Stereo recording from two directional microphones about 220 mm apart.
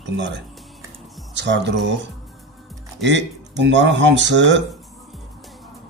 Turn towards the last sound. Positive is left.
turn(degrees=-55)  # may be behind; listen again after turning